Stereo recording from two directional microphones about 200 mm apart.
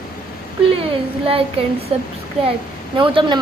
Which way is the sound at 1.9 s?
30° right (ahead or behind).